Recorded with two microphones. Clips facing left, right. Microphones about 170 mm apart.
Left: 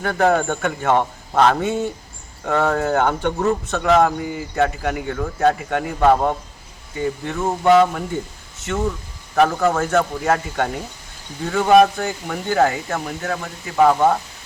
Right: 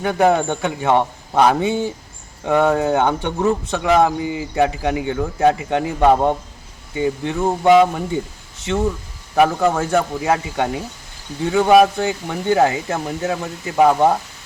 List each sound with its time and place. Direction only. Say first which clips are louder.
0.0 s speech: right 2 dB; 15° right (ahead or behind)
9.3 s speech: right 1 dB; 10° right (ahead or behind)
11.9 s speech: right 3 dB; 20° right (ahead or behind)